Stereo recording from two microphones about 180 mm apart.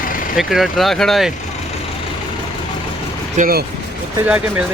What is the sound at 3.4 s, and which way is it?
Speech, 55° right (ahead or behind).